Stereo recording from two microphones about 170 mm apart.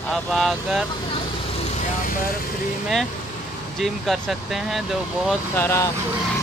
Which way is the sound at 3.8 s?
Centre (ahead or behind).